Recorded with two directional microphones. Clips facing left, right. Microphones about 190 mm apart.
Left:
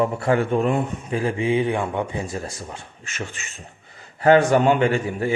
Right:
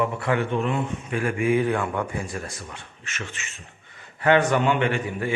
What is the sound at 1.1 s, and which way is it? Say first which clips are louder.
A man's voice: even; 30° left (ahead or behind).